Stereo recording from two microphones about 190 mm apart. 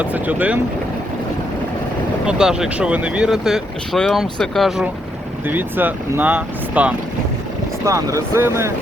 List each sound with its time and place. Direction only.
0.0 s speech: 5° right (ahead or behind)
2.2 s speech: 5° right (ahead or behind)
5.5 s speech: 10° right (ahead or behind)